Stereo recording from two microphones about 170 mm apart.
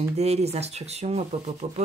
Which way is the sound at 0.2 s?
40° right (ahead or behind).